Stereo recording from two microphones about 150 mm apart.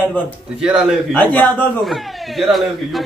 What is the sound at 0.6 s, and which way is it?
Speech, 5° right (ahead or behind).